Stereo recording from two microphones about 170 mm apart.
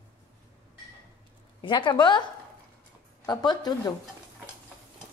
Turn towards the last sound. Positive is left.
turn(degrees=25)  # may be behind; listen again after turning